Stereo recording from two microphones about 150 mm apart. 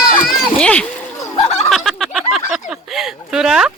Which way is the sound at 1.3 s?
45° left (ahead or behind).